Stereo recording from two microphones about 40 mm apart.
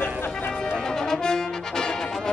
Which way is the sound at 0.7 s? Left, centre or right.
Centre.